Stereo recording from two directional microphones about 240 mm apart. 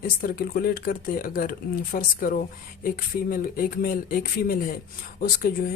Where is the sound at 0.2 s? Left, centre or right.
Left.